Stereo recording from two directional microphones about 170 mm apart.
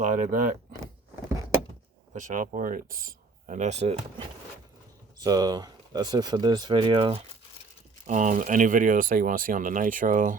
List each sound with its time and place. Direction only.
0.0 s speech: 50° right (ahead or behind)
2.1 s speech: 50° right (ahead or behind)
5.2 s speech: 20° right (ahead or behind)
8.0 s speech: 50° right (ahead or behind)